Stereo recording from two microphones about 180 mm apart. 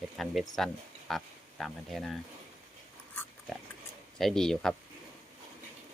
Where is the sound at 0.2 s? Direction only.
Centre (ahead or behind).